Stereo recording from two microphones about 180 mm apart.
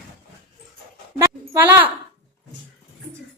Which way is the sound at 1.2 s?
15° right (ahead or behind).